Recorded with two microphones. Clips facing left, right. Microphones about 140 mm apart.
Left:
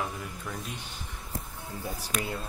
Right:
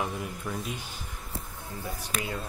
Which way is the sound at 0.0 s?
10° right (ahead or behind).